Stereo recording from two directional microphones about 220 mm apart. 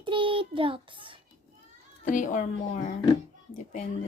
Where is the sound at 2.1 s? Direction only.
35° left (ahead or behind).